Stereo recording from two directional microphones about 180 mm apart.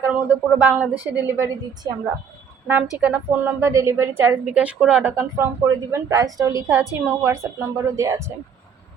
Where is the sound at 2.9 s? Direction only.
10° right (ahead or behind).